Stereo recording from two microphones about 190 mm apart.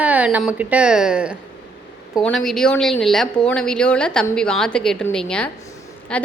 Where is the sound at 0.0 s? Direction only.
5° right (ahead or behind).